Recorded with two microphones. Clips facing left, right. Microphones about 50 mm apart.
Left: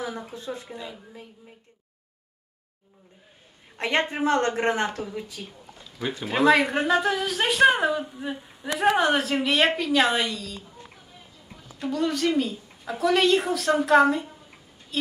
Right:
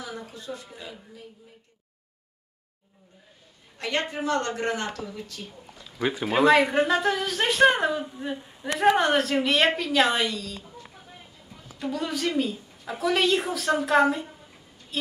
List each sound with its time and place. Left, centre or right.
0.0 s speech: left
3.7 s speech: left
5.9 s speech: centre
11.8 s speech: centre